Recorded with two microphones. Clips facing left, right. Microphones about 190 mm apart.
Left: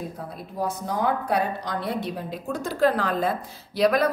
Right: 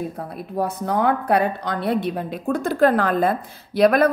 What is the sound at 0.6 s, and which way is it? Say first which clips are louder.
A woman's voice: right 5 dB; 60° right (ahead or behind).